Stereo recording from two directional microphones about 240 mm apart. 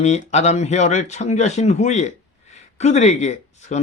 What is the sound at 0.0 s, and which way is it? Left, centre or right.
Speech, left.